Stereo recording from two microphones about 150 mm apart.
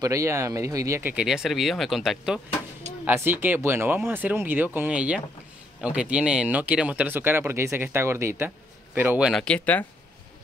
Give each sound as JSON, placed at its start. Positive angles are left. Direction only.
{"t": 0.0, "sound": "speech", "side_deg": -20}
{"t": 1.1, "sound": "speech", "side_deg": -5}
{"t": 3.1, "sound": "speech", "side_deg": -15}
{"t": 8.5, "sound": "a sound", "side_deg": -15}
{"t": 9.3, "sound": "speech", "side_deg": 5}